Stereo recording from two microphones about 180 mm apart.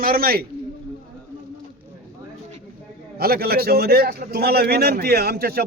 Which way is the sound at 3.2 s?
60° right (ahead or behind).